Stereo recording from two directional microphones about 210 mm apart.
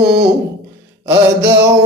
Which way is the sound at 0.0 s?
50° right (ahead or behind).